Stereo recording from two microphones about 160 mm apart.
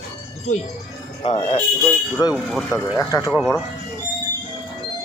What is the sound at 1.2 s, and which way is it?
Speech, 35° left (ahead or behind).